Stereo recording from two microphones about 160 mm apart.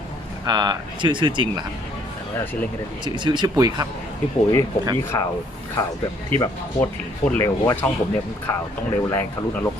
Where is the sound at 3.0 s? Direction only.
30° right (ahead or behind).